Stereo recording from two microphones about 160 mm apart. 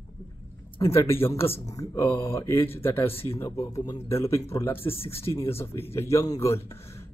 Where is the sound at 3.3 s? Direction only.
20° left (ahead or behind).